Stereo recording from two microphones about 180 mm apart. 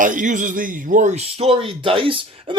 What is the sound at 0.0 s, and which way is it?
A man's voice, 45° right (ahead or behind).